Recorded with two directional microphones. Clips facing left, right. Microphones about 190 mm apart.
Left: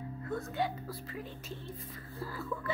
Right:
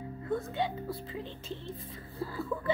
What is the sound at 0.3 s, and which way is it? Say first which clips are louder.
Speech: right 3 dB; 25° right (ahead or behind).